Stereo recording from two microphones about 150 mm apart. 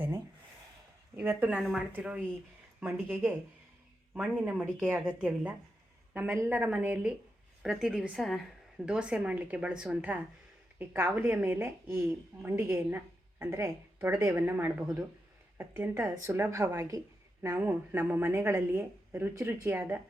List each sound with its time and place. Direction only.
1.1 s a woman's voice: 15° right (ahead or behind)
4.1 s a woman's voice: 5° right (ahead or behind)